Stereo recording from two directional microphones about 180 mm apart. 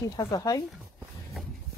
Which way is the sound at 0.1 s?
20° left (ahead or behind).